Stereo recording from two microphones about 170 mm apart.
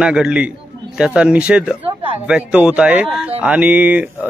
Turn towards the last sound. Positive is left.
turn(degrees=-10)  # may be behind; listen again after turning